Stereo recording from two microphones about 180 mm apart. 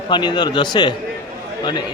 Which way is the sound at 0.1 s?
25° left (ahead or behind).